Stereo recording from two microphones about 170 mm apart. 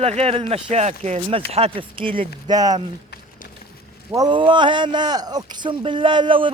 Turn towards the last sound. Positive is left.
turn(degrees=-30)  # may be behind; listen again after turning